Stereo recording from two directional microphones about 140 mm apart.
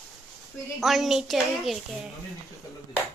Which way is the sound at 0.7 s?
Centre (ahead or behind).